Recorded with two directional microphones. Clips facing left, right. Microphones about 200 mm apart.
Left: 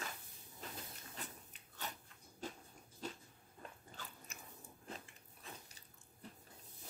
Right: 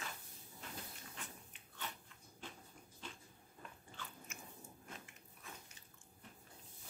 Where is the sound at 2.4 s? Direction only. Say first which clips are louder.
Left 6 dB; 40° left (ahead or behind).